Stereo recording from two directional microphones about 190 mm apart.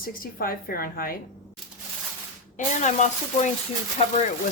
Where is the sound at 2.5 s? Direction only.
40° left (ahead or behind).